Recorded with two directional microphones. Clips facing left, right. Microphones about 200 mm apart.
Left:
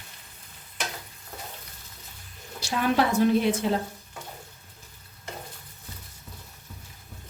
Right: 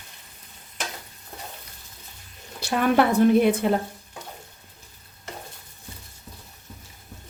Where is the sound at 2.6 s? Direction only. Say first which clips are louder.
Right 4 dB; 55° right (ahead or behind).